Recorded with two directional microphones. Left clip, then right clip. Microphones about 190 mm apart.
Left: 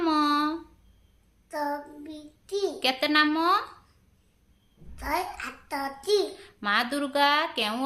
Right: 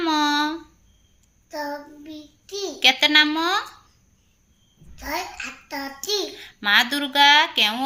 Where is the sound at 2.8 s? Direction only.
Centre (ahead or behind).